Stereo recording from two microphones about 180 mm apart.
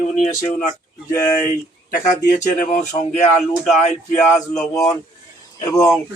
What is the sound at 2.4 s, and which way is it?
Speech, 40° left (ahead or behind).